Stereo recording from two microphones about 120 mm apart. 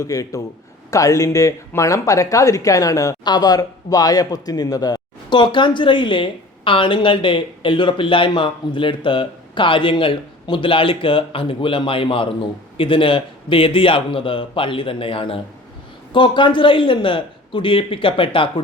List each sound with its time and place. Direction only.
0.0 s a man's voice: 30° left (ahead or behind); by 18.6 s 45° left (ahead or behind)